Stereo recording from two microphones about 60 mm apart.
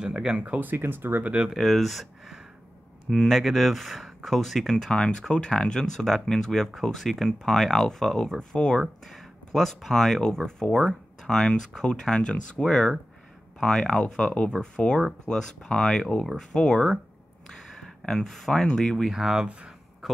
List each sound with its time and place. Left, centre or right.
0.0 s speech: centre
0.7 s speech: right
1.2 s speech: right
1.5 s speech: centre
19.0 s speech: centre